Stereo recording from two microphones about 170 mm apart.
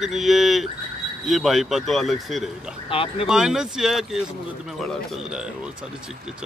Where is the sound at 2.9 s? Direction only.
35° left (ahead or behind).